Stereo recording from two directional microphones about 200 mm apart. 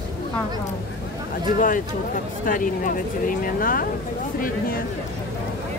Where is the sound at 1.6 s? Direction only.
40° left (ahead or behind).